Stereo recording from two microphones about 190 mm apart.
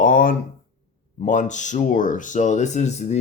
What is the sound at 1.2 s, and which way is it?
Speech, 40° left (ahead or behind).